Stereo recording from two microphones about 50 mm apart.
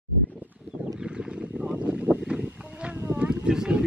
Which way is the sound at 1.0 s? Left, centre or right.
Centre.